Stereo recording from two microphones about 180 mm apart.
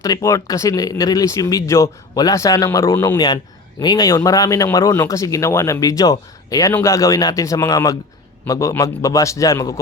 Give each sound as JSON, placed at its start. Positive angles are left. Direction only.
{"t": 0.0, "sound": "speech", "side_deg": 15}